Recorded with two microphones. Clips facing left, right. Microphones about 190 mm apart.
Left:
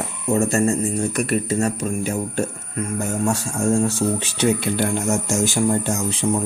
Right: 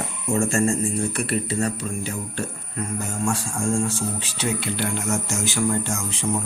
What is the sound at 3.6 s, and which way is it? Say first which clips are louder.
Speech: left 6 dB; 65° left (ahead or behind).